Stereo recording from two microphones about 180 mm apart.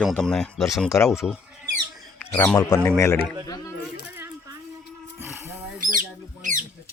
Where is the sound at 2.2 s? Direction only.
10° left (ahead or behind).